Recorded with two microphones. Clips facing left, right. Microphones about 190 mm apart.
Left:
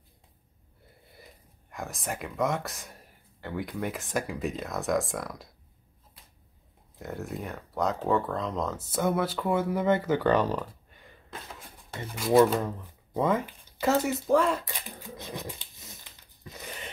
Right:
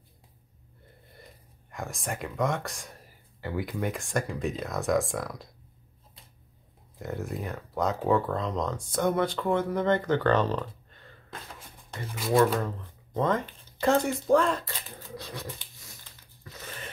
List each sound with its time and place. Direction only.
1.1 s speech: centre (ahead or behind)
7.0 s speech: centre (ahead or behind)
12.5 s speech: 10° left (ahead or behind)
14.6 s dog: 20° left (ahead or behind)